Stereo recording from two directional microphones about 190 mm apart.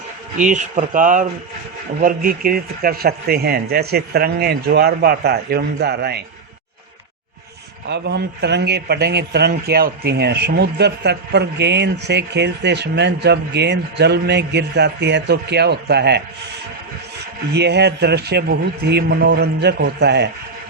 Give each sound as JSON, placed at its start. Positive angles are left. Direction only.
{"t": 0.3, "sound": "a man's voice", "side_deg": -40}
{"t": 7.9, "sound": "a man's voice", "side_deg": -65}
{"t": 17.5, "sound": "a man's voice", "side_deg": -60}